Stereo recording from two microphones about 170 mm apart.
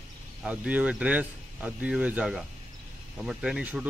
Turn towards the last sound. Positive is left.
turn(degrees=-5)  # may be behind; listen again after turning